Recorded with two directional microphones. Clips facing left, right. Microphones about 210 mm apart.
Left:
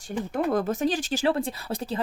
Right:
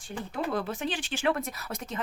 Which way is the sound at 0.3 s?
45° left (ahead or behind).